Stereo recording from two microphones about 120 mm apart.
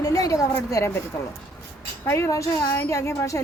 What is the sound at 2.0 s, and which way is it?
Speech, 25° left (ahead or behind).